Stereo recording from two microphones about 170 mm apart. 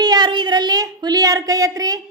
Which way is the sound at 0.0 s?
25° right (ahead or behind).